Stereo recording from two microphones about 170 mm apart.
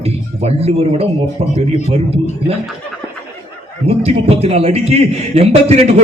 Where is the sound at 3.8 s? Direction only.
35° right (ahead or behind).